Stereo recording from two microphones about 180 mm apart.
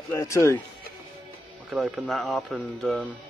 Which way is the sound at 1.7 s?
Centre (ahead or behind).